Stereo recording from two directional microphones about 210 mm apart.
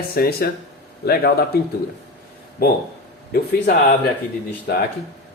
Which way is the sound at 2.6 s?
45° left (ahead or behind).